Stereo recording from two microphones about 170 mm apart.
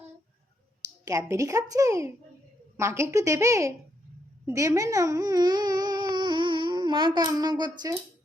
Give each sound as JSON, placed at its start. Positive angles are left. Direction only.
{"t": 1.0, "sound": "a woman's voice", "side_deg": -20}